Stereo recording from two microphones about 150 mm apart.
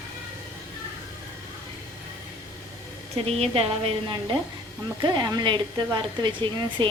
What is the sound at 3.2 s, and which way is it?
A woman's voice, 40° right (ahead or behind).